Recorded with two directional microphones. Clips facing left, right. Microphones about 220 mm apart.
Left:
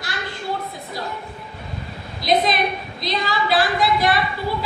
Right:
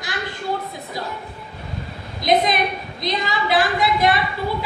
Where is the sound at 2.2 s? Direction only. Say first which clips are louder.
Right 1 dB; 20° right (ahead or behind).